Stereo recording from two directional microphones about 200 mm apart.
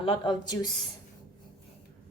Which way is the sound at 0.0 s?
25° left (ahead or behind).